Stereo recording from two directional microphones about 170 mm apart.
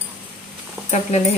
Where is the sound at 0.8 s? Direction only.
40° left (ahead or behind).